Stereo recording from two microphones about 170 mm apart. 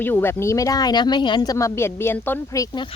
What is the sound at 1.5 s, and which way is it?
Speech, 15° left (ahead or behind).